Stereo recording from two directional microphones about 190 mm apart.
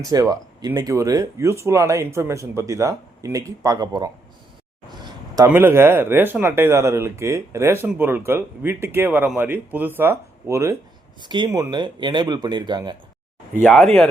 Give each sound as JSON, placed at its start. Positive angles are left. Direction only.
{"t": 0.0, "sound": "speech", "side_deg": -20}
{"t": 4.9, "sound": "a sound", "side_deg": -20}
{"t": 5.5, "sound": "speech", "side_deg": -10}
{"t": 13.6, "sound": "speech", "side_deg": 5}